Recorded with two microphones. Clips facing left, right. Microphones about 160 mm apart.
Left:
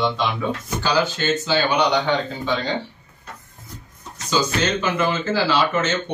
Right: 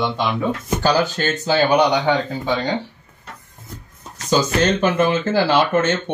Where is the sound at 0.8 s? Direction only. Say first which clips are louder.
Right 2 dB; 50° right (ahead or behind).